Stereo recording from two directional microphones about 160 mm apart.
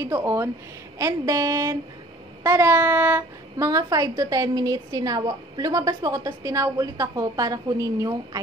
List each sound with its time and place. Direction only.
0.0 s a woman's voice: 20° right (ahead or behind)